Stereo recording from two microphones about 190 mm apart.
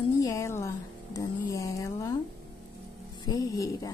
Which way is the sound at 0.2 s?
15° left (ahead or behind).